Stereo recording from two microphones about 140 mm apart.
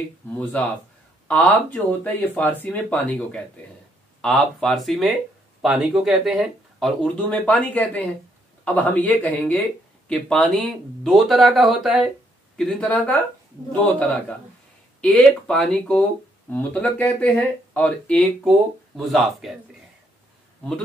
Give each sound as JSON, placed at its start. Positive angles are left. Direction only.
{"t": 0.4, "sound": "speech", "side_deg": 10}
{"t": 7.2, "sound": "speech", "side_deg": 10}
{"t": 15.0, "sound": "speech", "side_deg": 5}